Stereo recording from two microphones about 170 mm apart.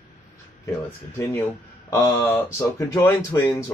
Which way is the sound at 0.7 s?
15° left (ahead or behind).